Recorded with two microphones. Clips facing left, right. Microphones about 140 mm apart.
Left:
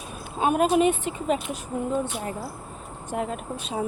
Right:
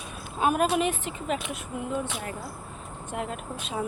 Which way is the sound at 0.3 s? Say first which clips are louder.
Left 3 dB; 25° left (ahead or behind).